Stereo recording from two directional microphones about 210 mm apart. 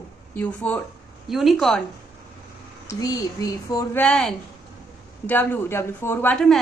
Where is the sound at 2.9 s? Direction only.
15° left (ahead or behind).